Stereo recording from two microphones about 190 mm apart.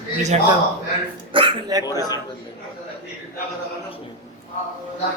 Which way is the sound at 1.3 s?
25° right (ahead or behind).